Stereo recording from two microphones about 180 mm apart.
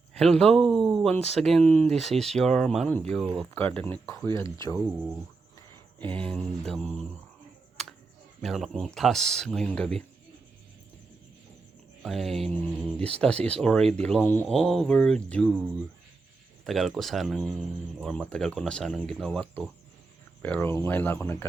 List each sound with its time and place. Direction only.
0.1 s speech: 5° left (ahead or behind)
4.8 s speech: 5° right (ahead or behind)
6.0 s speech: 10° left (ahead or behind)
7.8 s a sound: centre (ahead or behind)
8.4 s speech: centre (ahead or behind)
12.0 s speech: centre (ahead or behind)
16.6 s speech: centre (ahead or behind)